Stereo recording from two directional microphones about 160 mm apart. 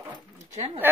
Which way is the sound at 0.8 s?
15° right (ahead or behind).